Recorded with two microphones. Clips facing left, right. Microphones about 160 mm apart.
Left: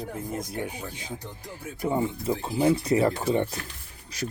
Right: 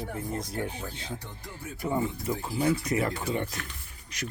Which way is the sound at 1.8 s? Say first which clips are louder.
Left 3 dB; 25° left (ahead or behind).